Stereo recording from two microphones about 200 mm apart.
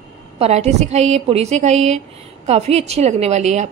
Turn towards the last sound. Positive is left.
turn(degrees=-35)  # may be behind; listen again after turning